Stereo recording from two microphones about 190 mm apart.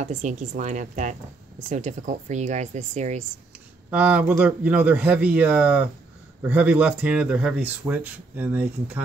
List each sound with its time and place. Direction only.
0.0 s speech: 40° right (ahead or behind)
3.9 s speech: 10° right (ahead or behind)